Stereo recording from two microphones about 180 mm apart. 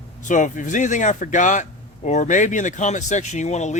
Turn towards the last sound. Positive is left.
turn(degrees=40)  # may be behind; listen again after turning